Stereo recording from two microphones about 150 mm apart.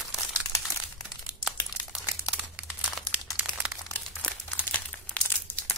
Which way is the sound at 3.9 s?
10° left (ahead or behind).